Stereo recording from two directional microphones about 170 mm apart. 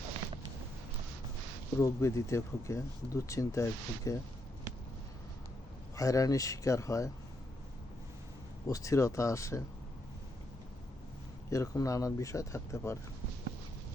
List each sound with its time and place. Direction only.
1.8 s speech: 15° left (ahead or behind)
6.0 s speech: 20° left (ahead or behind)
8.6 s speech: 20° left (ahead or behind)
11.5 s speech: 20° left (ahead or behind)